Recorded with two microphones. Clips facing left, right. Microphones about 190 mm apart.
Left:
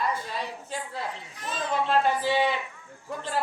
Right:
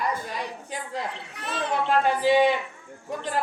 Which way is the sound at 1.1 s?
65° right (ahead or behind).